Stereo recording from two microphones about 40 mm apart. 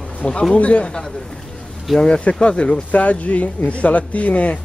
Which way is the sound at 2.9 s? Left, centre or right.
Left.